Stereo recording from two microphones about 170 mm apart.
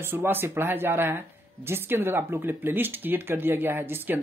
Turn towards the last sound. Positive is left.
turn(degrees=-10)  # may be behind; listen again after turning